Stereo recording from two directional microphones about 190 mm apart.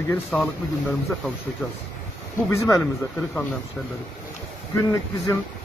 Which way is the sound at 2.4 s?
15° left (ahead or behind).